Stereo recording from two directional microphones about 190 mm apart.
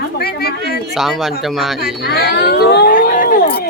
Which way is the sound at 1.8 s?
60° left (ahead or behind).